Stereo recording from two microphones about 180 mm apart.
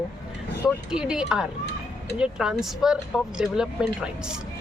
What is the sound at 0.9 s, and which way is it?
Speech, 5° right (ahead or behind).